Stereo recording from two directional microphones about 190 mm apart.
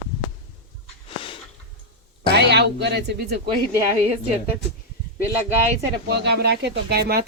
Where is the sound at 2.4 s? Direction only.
60° right (ahead or behind).